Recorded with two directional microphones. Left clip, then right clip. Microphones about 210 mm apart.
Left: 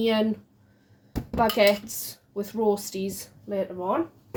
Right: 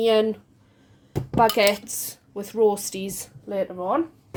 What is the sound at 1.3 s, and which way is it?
Speech, 40° right (ahead or behind).